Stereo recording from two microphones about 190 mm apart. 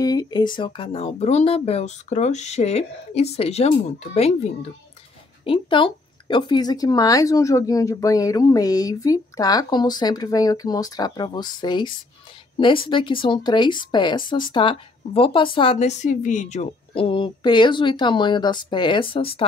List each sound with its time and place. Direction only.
0.0 s speech: 20° left (ahead or behind)